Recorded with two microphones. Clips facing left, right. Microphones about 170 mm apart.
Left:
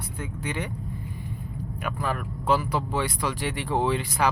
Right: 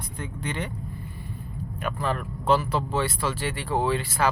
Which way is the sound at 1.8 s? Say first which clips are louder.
Right 2 dB; 10° left (ahead or behind).